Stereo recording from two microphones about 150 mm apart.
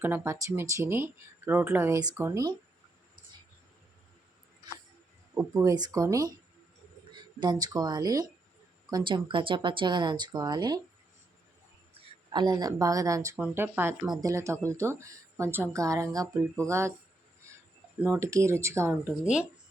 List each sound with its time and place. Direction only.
0.0 s speech: 15° right (ahead or behind)
5.3 s speech: 20° right (ahead or behind)
7.3 s speech: 25° right (ahead or behind)
12.0 s a sound: 40° right (ahead or behind)
12.3 s speech: 30° right (ahead or behind)
13.3 s speech: 10° right (ahead or behind)
17.5 s a sound: 20° right (ahead or behind)
18.0 s speech: 10° right (ahead or behind)